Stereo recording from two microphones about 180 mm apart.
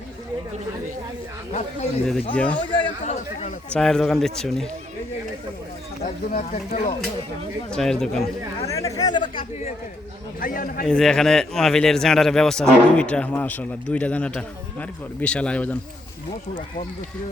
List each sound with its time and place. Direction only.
2.3 s a man's voice: 5° left (ahead or behind)
2.7 s chatter: 25° left (ahead or behind)
3.7 s a man's voice: 5° left (ahead or behind)
6.0 s speech: 40° left (ahead or behind)
7.7 s a man's voice: 5° left (ahead or behind)
8.6 s chatter: 15° left (ahead or behind)
10.4 s a man's voice: 50° left (ahead or behind)
10.8 s a man's voice: 5° left (ahead or behind)